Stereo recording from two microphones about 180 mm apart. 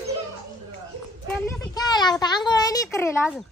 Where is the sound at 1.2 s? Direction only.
20° left (ahead or behind).